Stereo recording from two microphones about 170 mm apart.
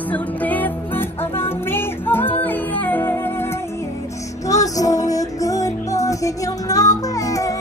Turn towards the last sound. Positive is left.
turn(degrees=20)  # may be behind; listen again after turning